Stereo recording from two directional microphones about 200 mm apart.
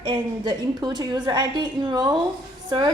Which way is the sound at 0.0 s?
20° right (ahead or behind).